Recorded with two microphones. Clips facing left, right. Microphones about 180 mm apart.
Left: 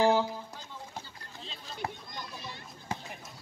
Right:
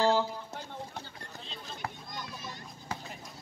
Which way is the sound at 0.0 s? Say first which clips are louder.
Left 2 dB; 15° left (ahead or behind).